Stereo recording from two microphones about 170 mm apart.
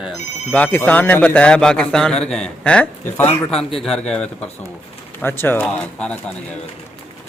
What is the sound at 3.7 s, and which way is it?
Speech, 35° left (ahead or behind).